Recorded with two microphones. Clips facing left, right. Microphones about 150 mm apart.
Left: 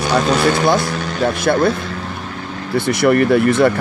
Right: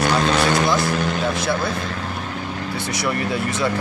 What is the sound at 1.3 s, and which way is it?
Speech, 55° left (ahead or behind).